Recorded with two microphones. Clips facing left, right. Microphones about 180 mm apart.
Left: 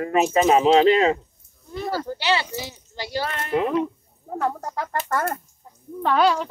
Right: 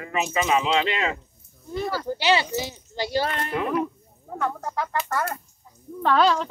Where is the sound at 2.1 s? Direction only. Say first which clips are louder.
Right 5 dB; 15° right (ahead or behind).